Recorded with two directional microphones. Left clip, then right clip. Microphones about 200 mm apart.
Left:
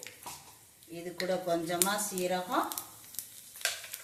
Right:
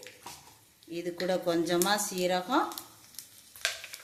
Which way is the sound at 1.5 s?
50° right (ahead or behind).